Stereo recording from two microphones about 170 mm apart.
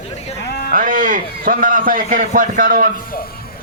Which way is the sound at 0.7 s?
55° right (ahead or behind).